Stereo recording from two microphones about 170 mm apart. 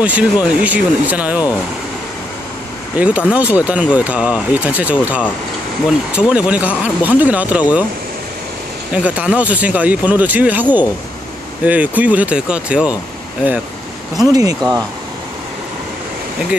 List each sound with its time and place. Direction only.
0.0 s speech: 10° right (ahead or behind)
3.0 s speech: 10° right (ahead or behind)
8.9 s speech: 5° right (ahead or behind)
14.1 s speech: 20° right (ahead or behind)